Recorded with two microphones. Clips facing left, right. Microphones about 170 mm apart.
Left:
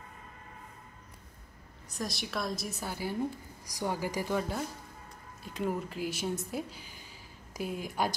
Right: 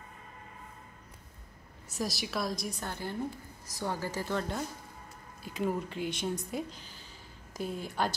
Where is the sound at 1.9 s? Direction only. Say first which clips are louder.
Right 2 dB; 5° right (ahead or behind).